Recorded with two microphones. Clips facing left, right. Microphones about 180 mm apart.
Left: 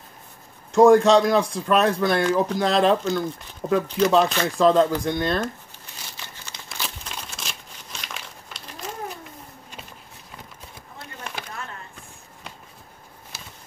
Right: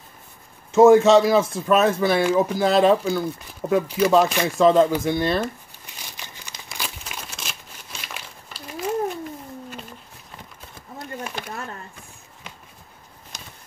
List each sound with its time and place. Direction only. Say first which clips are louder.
0.7 s speech: right 1 dB; 5° right (ahead or behind)
6.1 s crumpling: even; 15° right (ahead or behind)
11.2 s a sound: right 3 dB; 5° right (ahead or behind)